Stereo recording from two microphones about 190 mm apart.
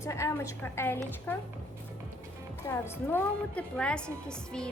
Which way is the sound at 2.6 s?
15° left (ahead or behind).